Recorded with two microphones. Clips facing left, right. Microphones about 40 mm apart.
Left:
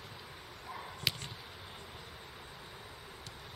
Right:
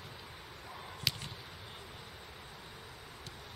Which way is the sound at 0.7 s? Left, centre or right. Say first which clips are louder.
Left 1 dB; centre.